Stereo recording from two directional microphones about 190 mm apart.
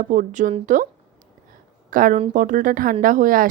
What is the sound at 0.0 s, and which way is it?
Speech, 45° right (ahead or behind).